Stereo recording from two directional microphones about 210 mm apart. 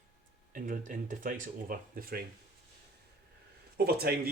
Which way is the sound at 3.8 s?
50° right (ahead or behind).